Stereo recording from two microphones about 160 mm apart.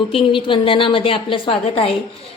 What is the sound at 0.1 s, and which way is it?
A woman's voice, 30° left (ahead or behind).